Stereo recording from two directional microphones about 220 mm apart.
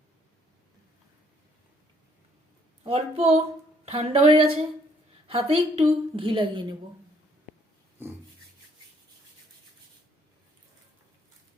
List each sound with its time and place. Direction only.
2.8 s a woman's voice: 25° right (ahead or behind)